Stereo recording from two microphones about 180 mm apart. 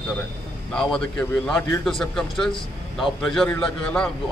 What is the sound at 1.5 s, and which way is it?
A man's voice, centre (ahead or behind).